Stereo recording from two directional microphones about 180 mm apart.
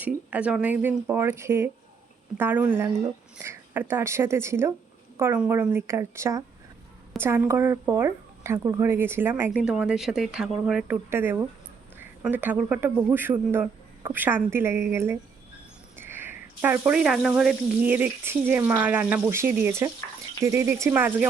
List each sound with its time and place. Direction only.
0.0 s a woman's voice: 5° right (ahead or behind)